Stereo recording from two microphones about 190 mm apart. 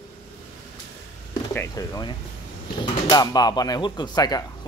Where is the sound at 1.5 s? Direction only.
15° left (ahead or behind).